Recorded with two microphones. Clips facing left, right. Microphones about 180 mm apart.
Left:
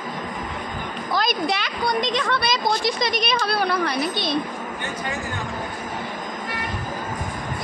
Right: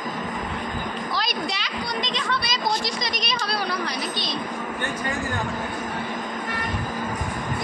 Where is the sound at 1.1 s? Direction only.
50° left (ahead or behind).